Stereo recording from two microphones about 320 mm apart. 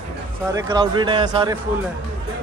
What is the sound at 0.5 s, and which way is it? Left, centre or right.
Speech, centre.